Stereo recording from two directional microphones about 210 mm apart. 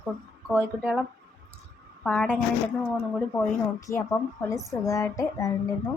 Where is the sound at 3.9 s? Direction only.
10° left (ahead or behind).